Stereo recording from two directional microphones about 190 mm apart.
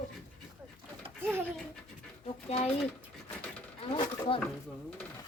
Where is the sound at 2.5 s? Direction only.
30° left (ahead or behind).